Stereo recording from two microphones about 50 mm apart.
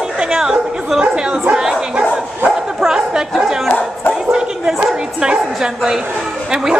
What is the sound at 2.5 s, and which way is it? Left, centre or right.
Bow-wow, centre.